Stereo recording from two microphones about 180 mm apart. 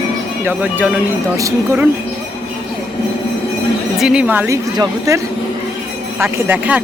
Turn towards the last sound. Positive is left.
turn(degrees=-10)  # may be behind; listen again after turning